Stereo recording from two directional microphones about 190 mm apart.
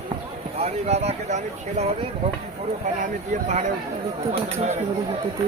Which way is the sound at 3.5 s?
35° right (ahead or behind).